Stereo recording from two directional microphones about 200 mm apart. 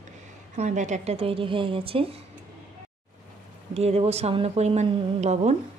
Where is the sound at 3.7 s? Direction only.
30° right (ahead or behind).